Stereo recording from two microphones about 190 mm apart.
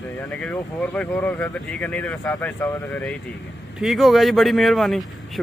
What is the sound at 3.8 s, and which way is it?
Speech, centre (ahead or behind).